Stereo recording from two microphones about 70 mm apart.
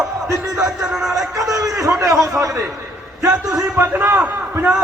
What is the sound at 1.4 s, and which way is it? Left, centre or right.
Speech, right.